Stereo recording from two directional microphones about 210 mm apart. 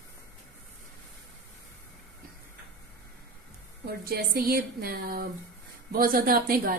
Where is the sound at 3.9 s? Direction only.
45° right (ahead or behind).